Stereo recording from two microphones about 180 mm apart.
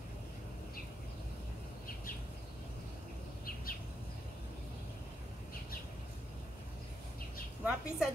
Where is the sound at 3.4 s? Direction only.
55° left (ahead or behind).